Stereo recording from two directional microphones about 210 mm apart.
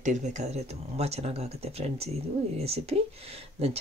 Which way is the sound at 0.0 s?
35° right (ahead or behind).